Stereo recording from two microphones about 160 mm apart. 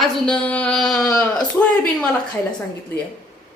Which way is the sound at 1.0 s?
20° left (ahead or behind).